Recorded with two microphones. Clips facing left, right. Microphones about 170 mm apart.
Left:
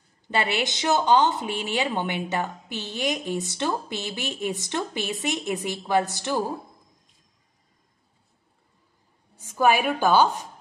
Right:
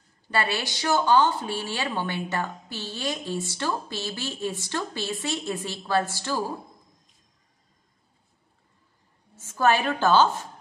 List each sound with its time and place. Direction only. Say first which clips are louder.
0.3 s speech: left 2 dB; 20° left (ahead or behind)
9.3 s a woman's voice: left 1 dB; 15° left (ahead or behind)